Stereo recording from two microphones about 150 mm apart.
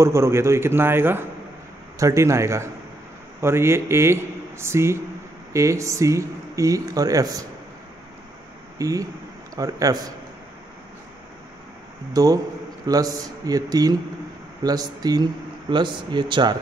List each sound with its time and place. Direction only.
0.0 s a man's voice: 20° right (ahead or behind)
8.7 s speech: 20° right (ahead or behind)
12.1 s speech: 25° right (ahead or behind)